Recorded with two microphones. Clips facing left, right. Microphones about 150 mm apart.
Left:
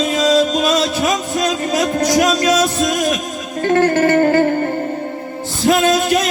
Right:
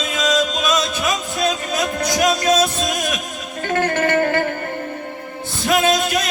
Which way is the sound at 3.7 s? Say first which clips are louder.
Left 5 dB; 30° left (ahead or behind).